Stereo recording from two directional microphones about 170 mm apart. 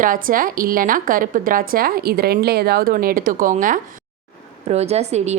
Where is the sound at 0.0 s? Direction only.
55° right (ahead or behind).